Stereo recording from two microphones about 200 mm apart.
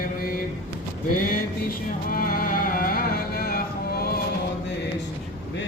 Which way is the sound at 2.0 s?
45° left (ahead or behind).